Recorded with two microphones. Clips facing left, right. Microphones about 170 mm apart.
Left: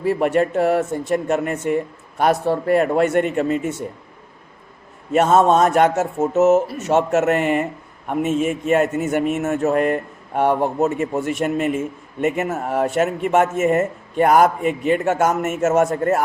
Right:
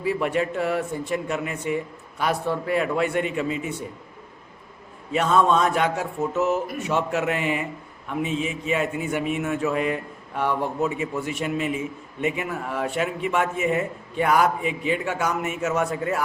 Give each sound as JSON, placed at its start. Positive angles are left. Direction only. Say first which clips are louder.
{"t": 0.0, "sound": "a man's voice", "louder": "left 6 dB", "side_deg": 50}
{"t": 5.1, "sound": "a man's voice", "louder": "left 5 dB", "side_deg": 45}